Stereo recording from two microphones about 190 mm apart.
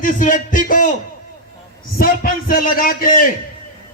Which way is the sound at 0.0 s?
45° left (ahead or behind).